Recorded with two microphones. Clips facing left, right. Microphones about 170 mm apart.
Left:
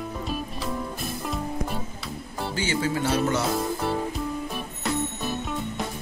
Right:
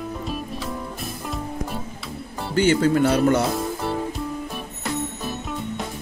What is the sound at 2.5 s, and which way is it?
Speech, 55° right (ahead or behind).